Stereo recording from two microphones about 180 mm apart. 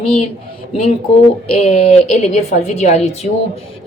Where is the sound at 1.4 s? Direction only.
35° left (ahead or behind).